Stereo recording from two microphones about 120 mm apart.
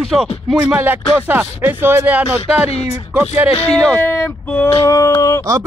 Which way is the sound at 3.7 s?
5° left (ahead or behind).